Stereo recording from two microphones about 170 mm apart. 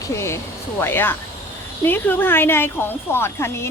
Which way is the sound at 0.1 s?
15° left (ahead or behind).